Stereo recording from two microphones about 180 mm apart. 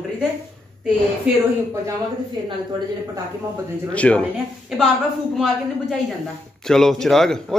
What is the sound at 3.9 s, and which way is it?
Speech, 5° left (ahead or behind).